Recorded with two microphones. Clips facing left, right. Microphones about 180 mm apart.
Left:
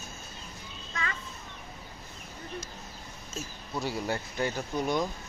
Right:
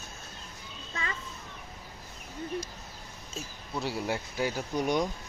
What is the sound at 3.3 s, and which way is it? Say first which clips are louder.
Speech: left 1 dB; centre (ahead or behind).